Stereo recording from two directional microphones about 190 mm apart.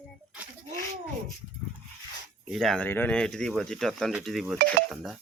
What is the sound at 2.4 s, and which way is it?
Speech, centre (ahead or behind).